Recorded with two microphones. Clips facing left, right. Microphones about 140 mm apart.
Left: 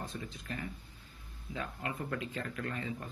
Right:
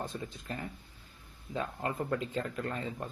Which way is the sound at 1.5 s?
35° right (ahead or behind).